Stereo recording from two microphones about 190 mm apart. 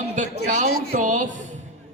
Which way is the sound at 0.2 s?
40° right (ahead or behind).